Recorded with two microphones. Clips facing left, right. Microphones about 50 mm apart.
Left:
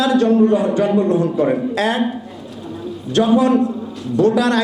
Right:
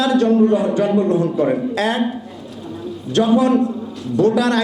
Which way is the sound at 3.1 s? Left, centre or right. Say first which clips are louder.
Left 1 dB; centre.